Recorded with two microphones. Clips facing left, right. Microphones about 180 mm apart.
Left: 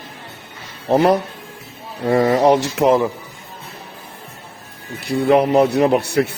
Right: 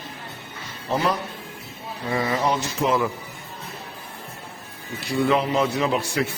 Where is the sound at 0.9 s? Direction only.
60° left (ahead or behind).